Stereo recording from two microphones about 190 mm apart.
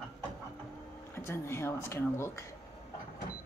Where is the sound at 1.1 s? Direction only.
15° left (ahead or behind).